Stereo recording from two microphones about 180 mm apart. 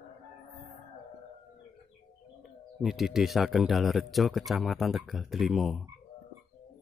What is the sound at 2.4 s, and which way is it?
Speech, centre (ahead or behind).